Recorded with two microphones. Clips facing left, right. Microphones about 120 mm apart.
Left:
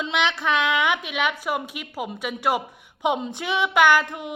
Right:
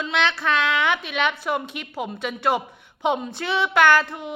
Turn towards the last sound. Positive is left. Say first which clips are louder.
# even
turn(degrees=15)  # may be behind; listen again after turning